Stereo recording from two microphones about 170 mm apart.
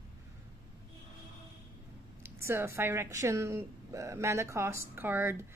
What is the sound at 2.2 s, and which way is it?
A woman's voice, 15° right (ahead or behind).